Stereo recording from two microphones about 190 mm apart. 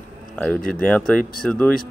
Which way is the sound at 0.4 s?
5° left (ahead or behind).